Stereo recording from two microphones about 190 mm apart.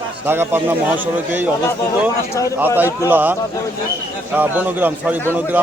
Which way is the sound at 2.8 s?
10° right (ahead or behind).